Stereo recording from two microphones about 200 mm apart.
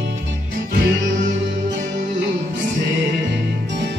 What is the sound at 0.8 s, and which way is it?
Music, 60° right (ahead or behind).